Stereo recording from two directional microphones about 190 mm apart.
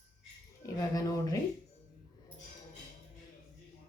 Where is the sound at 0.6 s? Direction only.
20° left (ahead or behind).